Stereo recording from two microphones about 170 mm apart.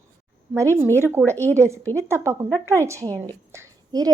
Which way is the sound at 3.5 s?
20° right (ahead or behind).